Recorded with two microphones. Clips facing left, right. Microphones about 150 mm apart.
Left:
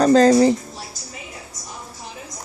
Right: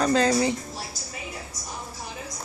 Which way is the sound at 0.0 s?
35° left (ahead or behind).